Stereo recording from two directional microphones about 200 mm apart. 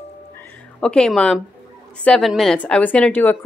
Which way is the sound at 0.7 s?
5° left (ahead or behind).